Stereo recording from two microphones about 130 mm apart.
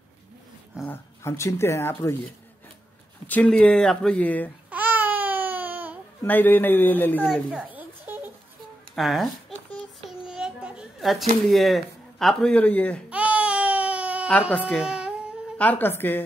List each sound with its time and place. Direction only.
0.8 s speech: 20° left (ahead or behind)
3.3 s speech: 10° left (ahead or behind)
4.6 s babbling: 15° right (ahead or behind)
6.2 s speech: 15° left (ahead or behind)
7.5 s a sound: 10° right (ahead or behind)
8.9 s speech: centre (ahead or behind)
10.0 s child singing: 5° right (ahead or behind)
11.4 s speech: centre (ahead or behind)
13.1 s baby cry: 10° right (ahead or behind)
15.5 s speech: 10° left (ahead or behind)